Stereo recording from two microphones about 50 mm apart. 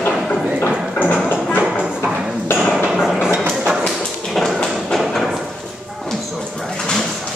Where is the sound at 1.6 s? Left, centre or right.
Right.